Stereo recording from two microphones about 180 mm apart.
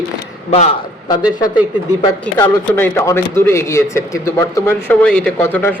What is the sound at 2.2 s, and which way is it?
A man's voice, 10° left (ahead or behind).